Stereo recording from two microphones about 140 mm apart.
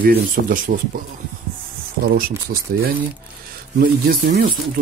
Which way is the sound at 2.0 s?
90° right.